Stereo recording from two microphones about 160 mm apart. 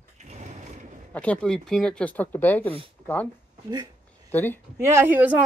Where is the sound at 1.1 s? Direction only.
10° left (ahead or behind).